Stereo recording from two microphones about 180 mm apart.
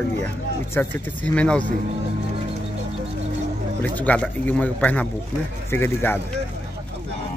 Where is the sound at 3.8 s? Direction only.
10° left (ahead or behind).